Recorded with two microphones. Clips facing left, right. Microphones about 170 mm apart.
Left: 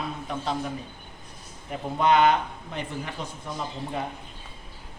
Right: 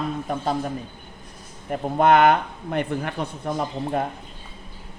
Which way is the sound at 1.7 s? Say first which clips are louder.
Right 5 dB; 55° right (ahead or behind).